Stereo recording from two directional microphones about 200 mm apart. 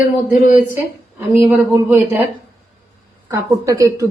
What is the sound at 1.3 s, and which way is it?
A woman's voice, 10° right (ahead or behind).